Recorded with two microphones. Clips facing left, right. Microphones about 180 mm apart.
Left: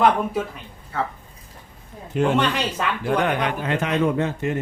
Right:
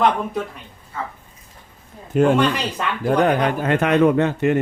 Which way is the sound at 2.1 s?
45° right (ahead or behind).